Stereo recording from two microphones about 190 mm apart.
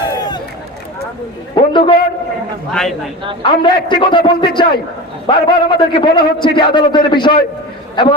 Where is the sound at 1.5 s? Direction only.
25° left (ahead or behind).